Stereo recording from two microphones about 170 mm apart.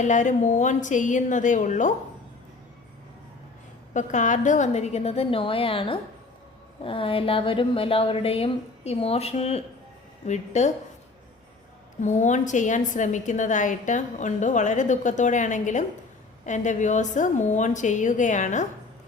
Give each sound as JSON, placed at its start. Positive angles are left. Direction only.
{"t": 0.0, "sound": "a woman's voice", "side_deg": 45}
{"t": 3.9, "sound": "a woman's voice", "side_deg": 45}
{"t": 12.0, "sound": "a woman's voice", "side_deg": 45}